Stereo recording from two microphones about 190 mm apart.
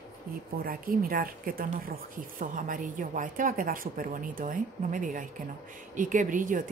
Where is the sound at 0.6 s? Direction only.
50° right (ahead or behind).